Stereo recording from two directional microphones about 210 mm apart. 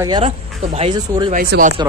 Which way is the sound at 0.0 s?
20° right (ahead or behind).